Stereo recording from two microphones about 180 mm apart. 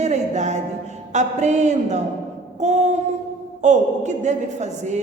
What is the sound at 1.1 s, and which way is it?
A man's voice, 40° right (ahead or behind).